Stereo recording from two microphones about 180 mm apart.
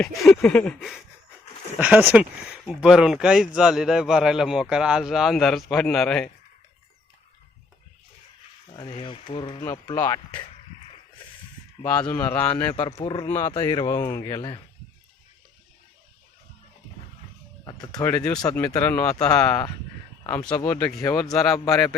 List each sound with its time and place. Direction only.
0.0 s speech: 5° left (ahead or behind)
8.7 s speech: 25° left (ahead or behind)
9.9 s speech: 15° left (ahead or behind)
11.9 s speech: 10° left (ahead or behind)
12.7 s speech: 25° left (ahead or behind)
13.2 s speech: 15° left (ahead or behind)
13.5 s speech: 30° left (ahead or behind)
17.7 s speech: 20° left (ahead or behind); by 19.6 s 5° left (ahead or behind)
20.7 s speech: 10° left (ahead or behind)